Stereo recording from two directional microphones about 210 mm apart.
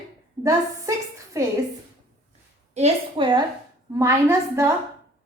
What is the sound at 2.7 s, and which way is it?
Speech, 25° right (ahead or behind).